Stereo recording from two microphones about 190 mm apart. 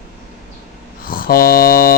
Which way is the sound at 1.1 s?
50° left (ahead or behind).